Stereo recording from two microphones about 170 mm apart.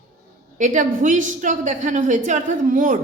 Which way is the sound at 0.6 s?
45° right (ahead or behind).